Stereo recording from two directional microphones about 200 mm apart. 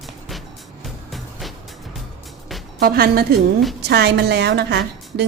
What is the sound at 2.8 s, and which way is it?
A woman's voice, 50° right (ahead or behind).